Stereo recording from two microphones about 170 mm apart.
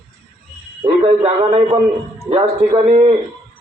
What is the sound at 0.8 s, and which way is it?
A man's voice, 35° right (ahead or behind).